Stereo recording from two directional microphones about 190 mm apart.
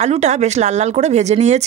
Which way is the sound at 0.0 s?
35° right (ahead or behind).